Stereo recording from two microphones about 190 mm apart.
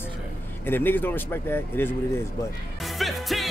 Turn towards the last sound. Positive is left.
turn(degrees=0)  # may be behind; listen again after turning